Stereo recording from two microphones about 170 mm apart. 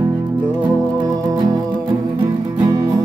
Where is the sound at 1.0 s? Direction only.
20° right (ahead or behind).